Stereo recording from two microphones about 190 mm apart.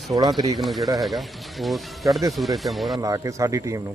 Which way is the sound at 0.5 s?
Centre (ahead or behind).